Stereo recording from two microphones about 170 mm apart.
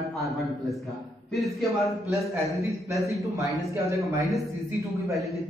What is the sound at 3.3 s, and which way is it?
Speech, 15° right (ahead or behind).